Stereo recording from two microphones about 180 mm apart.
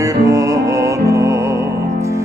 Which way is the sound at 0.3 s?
15° right (ahead or behind).